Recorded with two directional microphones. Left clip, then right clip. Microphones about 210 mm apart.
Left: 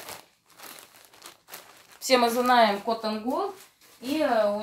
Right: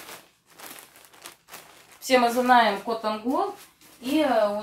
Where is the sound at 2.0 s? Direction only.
45° left (ahead or behind).